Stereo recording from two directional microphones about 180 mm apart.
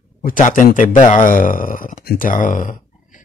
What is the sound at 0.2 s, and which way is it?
Speech, 50° left (ahead or behind).